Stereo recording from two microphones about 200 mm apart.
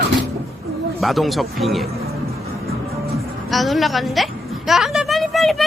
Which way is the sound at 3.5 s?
Centre (ahead or behind).